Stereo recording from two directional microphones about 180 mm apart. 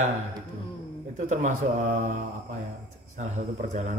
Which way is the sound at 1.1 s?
45° right (ahead or behind).